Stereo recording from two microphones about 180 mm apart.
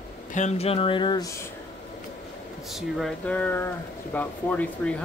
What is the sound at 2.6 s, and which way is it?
Speech, centre (ahead or behind).